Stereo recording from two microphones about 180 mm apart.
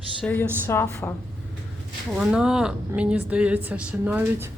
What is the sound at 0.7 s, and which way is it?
Speech, 15° left (ahead or behind).